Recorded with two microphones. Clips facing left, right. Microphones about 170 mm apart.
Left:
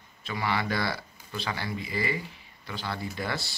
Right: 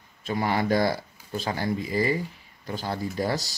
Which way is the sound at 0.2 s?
45° right (ahead or behind).